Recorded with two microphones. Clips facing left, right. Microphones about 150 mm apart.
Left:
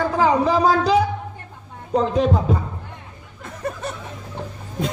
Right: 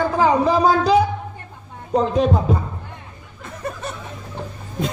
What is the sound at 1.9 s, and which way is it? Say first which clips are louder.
Speech: right 1 dB; 15° right (ahead or behind).